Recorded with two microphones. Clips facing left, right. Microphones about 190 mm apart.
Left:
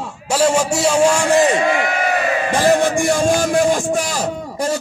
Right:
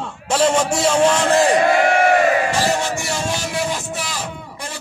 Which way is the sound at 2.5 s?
55° left (ahead or behind).